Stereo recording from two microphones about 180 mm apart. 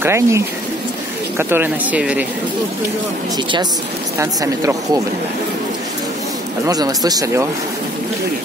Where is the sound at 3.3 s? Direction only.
25° right (ahead or behind).